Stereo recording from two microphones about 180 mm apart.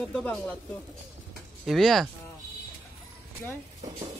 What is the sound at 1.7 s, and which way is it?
Speech, centre (ahead or behind).